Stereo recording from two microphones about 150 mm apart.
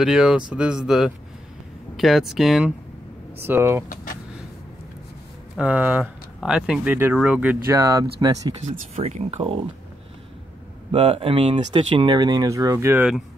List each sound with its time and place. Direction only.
0.0 s speech: 5° right (ahead or behind)
3.3 s speech: 15° right (ahead or behind)
3.9 s a sound: 60° left (ahead or behind)
5.6 s speech: 10° right (ahead or behind); by 8.5 s 25° right (ahead or behind)
8.9 s speech: 45° right (ahead or behind)
10.9 s speech: 40° right (ahead or behind); by 13.0 s 20° right (ahead or behind)